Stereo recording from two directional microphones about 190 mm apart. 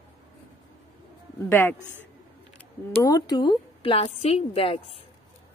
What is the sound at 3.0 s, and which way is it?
A woman's voice, 20° left (ahead or behind).